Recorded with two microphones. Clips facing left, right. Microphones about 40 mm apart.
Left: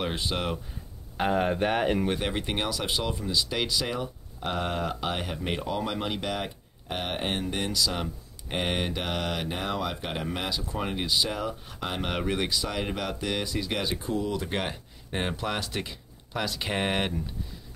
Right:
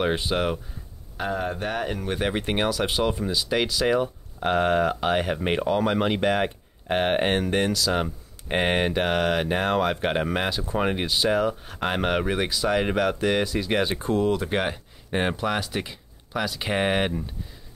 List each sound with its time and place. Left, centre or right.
0.0 s speech: centre
1.1 s speech: left
2.1 s speech: centre
9.6 s speech: right
11.2 s speech: centre
11.7 s speech: right
12.1 s speech: centre
12.6 s speech: centre
13.9 s speech: right
14.5 s speech: centre
15.4 s speech: centre